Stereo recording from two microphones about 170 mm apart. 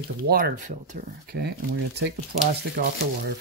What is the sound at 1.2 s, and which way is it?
Speech, 80° right.